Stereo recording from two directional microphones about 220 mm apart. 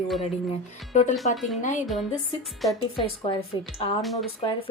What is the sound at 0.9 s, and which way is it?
Speech, 30° left (ahead or behind).